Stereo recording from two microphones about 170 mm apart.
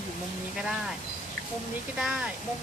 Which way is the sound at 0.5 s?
5° right (ahead or behind).